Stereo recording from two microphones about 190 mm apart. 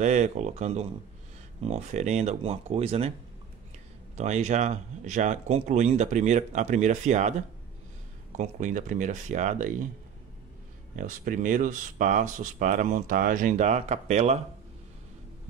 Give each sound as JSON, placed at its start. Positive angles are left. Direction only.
{"t": 0.0, "sound": "speech", "side_deg": -40}
{"t": 4.2, "sound": "speech", "side_deg": -35}
{"t": 8.4, "sound": "speech", "side_deg": -40}
{"t": 11.0, "sound": "speech", "side_deg": -45}